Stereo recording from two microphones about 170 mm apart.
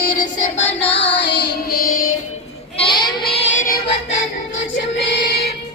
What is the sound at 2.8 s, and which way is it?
Child singing, 30° left (ahead or behind).